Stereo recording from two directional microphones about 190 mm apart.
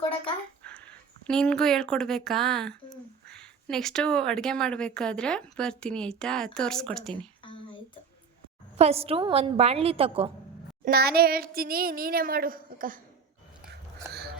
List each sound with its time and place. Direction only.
0.6 s dog: 5° left (ahead or behind)
1.3 s speech: 5° left (ahead or behind)
7.4 s a sound: 25° left (ahead or behind)
8.8 s a woman's voice: 30° right (ahead or behind)
10.8 s speech: 55° right (ahead or behind)
14.1 s a sound: 55° right (ahead or behind)